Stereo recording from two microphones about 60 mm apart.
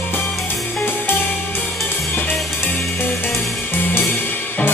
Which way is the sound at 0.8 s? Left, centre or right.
Left.